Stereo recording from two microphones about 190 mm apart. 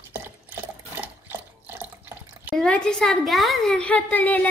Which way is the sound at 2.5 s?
5° left (ahead or behind).